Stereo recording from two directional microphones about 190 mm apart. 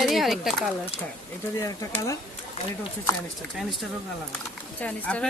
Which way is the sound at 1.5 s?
15° left (ahead or behind).